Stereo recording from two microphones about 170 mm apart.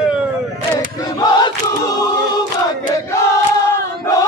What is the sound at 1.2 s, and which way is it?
Crowd, 20° left (ahead or behind).